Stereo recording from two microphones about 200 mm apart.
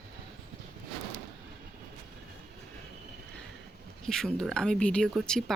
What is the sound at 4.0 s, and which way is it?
Speech, 5° left (ahead or behind).